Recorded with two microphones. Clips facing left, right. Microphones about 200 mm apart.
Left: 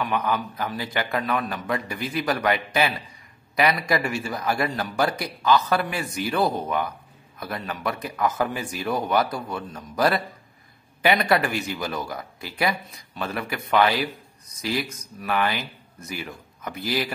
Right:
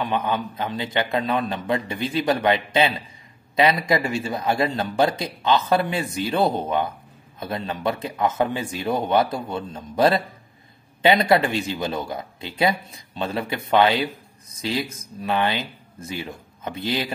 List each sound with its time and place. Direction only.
0.0 s speech: 25° right (ahead or behind)